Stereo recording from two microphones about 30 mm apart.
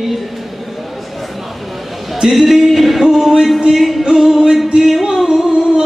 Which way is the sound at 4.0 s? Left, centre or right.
Centre.